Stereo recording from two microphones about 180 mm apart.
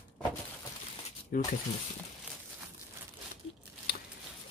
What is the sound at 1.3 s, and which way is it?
Speech, 55° left (ahead or behind).